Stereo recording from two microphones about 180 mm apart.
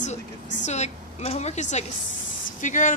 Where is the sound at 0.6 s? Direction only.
40° left (ahead or behind).